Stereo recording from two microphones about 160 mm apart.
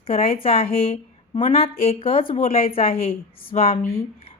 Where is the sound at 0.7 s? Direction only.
40° left (ahead or behind).